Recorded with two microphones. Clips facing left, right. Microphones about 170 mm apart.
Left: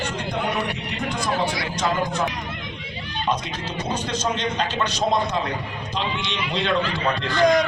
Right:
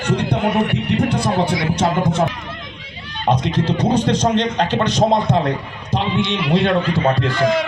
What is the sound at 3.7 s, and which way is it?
Speech, 60° right (ahead or behind).